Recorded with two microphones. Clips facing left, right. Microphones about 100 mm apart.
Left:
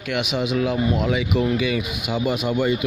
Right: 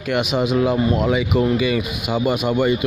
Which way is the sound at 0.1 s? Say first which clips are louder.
Right 4 dB; 40° right (ahead or behind).